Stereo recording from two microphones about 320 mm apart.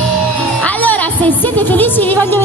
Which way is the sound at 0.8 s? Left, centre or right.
Centre.